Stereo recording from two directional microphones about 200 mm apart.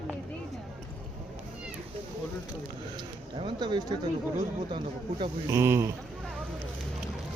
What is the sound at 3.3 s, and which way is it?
Speech, 25° right (ahead or behind).